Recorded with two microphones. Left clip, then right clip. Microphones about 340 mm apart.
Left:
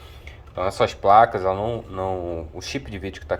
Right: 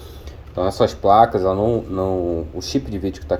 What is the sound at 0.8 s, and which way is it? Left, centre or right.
Speech, centre.